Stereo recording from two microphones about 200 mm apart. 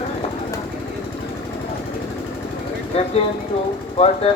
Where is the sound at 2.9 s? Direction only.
30° left (ahead or behind).